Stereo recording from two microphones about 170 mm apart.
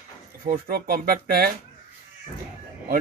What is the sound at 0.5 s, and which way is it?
Speech, 60° right (ahead or behind).